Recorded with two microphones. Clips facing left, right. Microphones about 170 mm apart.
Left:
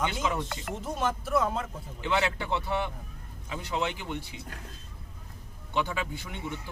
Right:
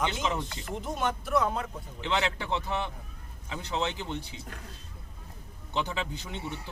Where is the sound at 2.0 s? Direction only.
20° right (ahead or behind).